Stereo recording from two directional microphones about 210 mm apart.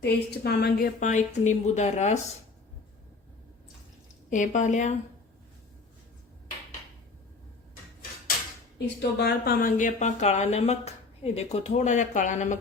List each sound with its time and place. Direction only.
0.0 s speech: 50° left (ahead or behind); by 2.1 s 35° left (ahead or behind)
4.3 s speech: 35° left (ahead or behind)
9.0 s speech: 50° left (ahead or behind)